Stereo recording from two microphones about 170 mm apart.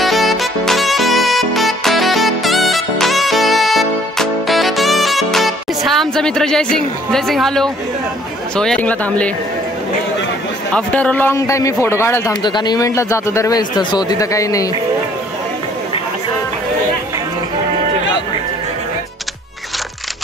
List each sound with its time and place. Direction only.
0.0 s music: centre (ahead or behind)
8.5 s a man's voice: 5° left (ahead or behind)
10.7 s a man's voice: 5° left (ahead or behind)
12.4 s a man's voice: 25° left (ahead or behind)